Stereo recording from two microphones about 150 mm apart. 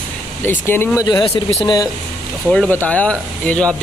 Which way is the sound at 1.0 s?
25° left (ahead or behind).